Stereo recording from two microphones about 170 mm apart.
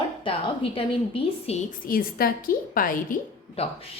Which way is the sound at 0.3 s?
30° left (ahead or behind).